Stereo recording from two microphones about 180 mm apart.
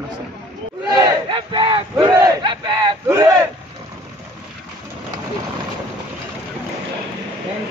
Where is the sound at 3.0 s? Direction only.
15° right (ahead or behind).